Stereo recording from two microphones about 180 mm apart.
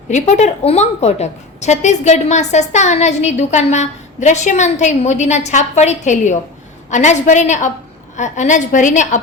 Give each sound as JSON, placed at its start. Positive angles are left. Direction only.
{"t": 0.1, "sound": "a woman's voice", "side_deg": 40}